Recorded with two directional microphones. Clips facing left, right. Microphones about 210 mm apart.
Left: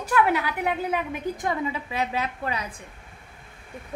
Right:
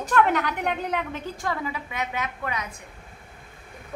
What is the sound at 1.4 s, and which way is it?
A woman's voice, 20° left (ahead or behind).